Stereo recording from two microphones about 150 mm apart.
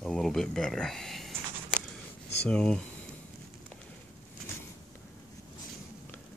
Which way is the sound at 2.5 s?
5° left (ahead or behind).